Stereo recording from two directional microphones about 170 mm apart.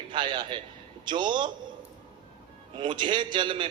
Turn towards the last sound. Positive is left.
turn(degrees=-30)  # may be behind; listen again after turning